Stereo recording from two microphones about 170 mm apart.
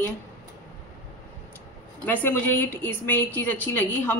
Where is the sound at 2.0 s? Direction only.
10° left (ahead or behind).